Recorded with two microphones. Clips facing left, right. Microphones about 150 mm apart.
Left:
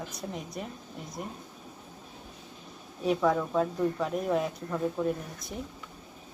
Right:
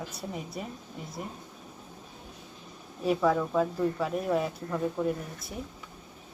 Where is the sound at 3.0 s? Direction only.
Centre (ahead or behind).